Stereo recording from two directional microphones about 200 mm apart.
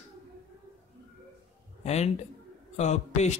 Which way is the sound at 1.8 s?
35° left (ahead or behind).